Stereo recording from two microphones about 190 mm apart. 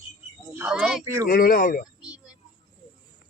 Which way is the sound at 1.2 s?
50° left (ahead or behind).